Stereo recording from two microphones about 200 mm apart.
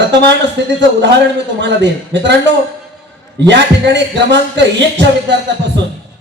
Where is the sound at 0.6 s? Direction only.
60° right (ahead or behind).